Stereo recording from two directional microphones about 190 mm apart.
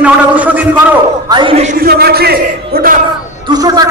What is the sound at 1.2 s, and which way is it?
Speech, 25° right (ahead or behind).